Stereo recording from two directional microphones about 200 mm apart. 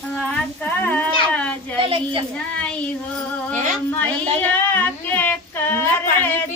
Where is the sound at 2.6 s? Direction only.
5° left (ahead or behind).